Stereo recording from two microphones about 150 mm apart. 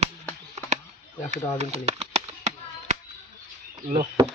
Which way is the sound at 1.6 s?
45° right (ahead or behind).